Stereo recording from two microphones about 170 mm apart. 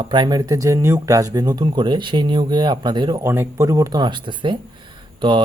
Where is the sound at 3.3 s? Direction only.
15° right (ahead or behind).